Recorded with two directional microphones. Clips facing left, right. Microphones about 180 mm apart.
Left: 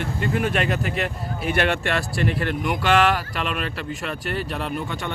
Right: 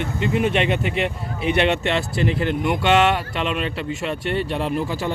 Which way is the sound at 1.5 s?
25° right (ahead or behind).